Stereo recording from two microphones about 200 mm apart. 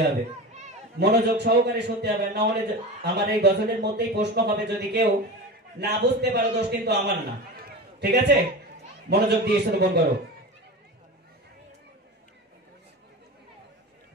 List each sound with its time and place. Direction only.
0.9 s a man's voice: 55° right (ahead or behind)